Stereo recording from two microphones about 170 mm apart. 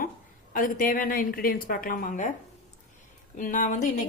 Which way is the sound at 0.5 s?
55° left (ahead or behind).